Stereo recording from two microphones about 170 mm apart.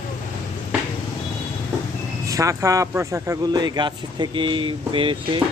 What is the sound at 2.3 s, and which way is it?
Speech, 20° right (ahead or behind).